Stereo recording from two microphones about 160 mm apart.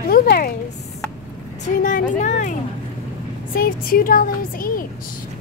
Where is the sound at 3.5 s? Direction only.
65° left (ahead or behind).